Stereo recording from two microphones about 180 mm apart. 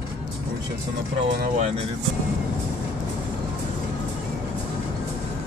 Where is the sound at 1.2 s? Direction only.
40° right (ahead or behind).